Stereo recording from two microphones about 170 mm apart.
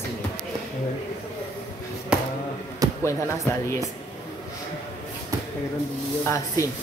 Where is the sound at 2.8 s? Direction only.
20° right (ahead or behind).